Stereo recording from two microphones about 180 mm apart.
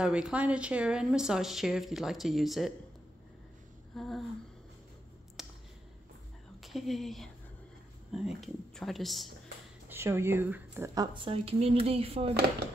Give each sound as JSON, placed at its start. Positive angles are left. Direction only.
{"t": 0.0, "sound": "speech", "side_deg": -5}
{"t": 3.9, "sound": "a sound", "side_deg": 0}
{"t": 5.4, "sound": "a sound", "side_deg": 0}
{"t": 6.6, "sound": "speech", "side_deg": 0}
{"t": 9.8, "sound": "speech", "side_deg": -15}
{"t": 11.2, "sound": "speech", "side_deg": -30}